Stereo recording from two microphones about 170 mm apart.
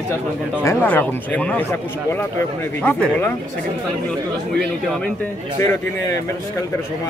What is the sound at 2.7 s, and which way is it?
Speech, 5° left (ahead or behind).